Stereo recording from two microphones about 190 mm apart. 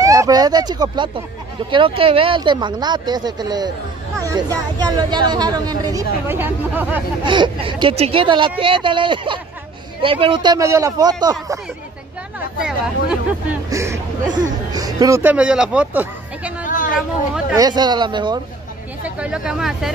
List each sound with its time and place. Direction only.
0.0 s speech: 20° right (ahead or behind)
7.2 s speech: 25° right (ahead or behind)
12.6 s speech: 5° right (ahead or behind)
13.7 s a man's voice: 15° right (ahead or behind)
16.6 s chatter: 45° left (ahead or behind)
17.6 s speech: 20° right (ahead or behind)
19.0 s speech: 5° right (ahead or behind)